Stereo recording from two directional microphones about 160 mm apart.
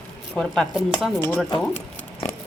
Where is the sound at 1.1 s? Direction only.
15° left (ahead or behind).